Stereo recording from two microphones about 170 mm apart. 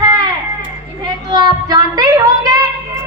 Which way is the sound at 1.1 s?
25° right (ahead or behind).